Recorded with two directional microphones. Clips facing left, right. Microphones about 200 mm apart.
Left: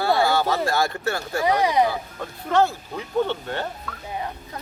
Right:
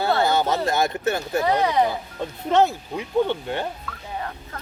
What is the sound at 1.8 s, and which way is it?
Speech, 20° right (ahead or behind).